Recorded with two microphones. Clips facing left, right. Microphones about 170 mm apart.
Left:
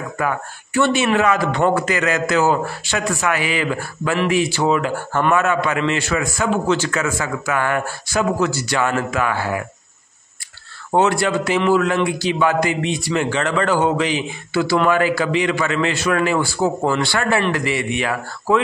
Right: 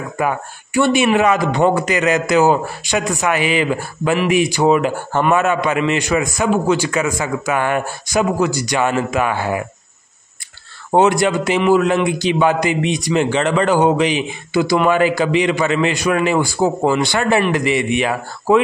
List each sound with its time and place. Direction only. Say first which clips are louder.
0.2 s a man's voice: right 3 dB; 15° right (ahead or behind)
10.9 s a man's voice: right 3 dB; 20° right (ahead or behind)